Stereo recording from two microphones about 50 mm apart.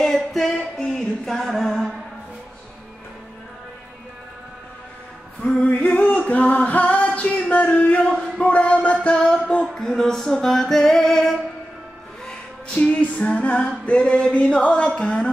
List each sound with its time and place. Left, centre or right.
0.0 s music: centre
5.4 s a sound: left
6.7 s singing: left
7.1 s a sound: left
9.0 s music: left
9.8 s music: centre
12.8 s music: left